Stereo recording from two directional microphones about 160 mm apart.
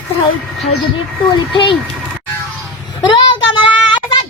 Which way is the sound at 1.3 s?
35° left (ahead or behind).